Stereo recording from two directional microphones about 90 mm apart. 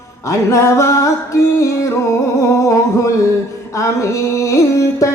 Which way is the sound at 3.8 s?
35° left (ahead or behind).